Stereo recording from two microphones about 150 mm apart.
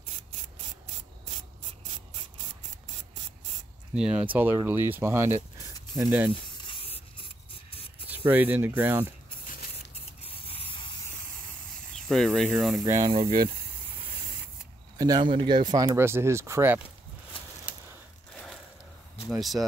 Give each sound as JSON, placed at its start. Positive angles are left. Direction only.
{"t": 3.9, "sound": "speech", "side_deg": -5}
{"t": 6.4, "sound": "spray", "side_deg": 35}
{"t": 8.1, "sound": "speech", "side_deg": -10}
{"t": 10.2, "sound": "spray", "side_deg": 40}
{"t": 11.9, "sound": "snake", "side_deg": 5}
{"t": 12.4, "sound": "speech", "side_deg": 0}
{"t": 12.8, "sound": "speech", "side_deg": -20}
{"t": 15.0, "sound": "speech", "side_deg": -25}
{"t": 16.0, "sound": "speech", "side_deg": -15}
{"t": 18.3, "sound": "crushing", "side_deg": 5}
{"t": 19.2, "sound": "speech", "side_deg": 0}